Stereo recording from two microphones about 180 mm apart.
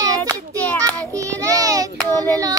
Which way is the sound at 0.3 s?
10° left (ahead or behind).